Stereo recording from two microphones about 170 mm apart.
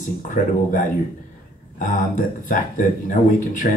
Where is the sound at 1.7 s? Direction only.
50° left (ahead or behind).